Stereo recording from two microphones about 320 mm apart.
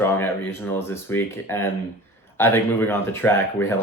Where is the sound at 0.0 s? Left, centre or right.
Centre.